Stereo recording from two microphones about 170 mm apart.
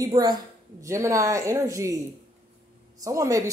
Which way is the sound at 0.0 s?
25° right (ahead or behind).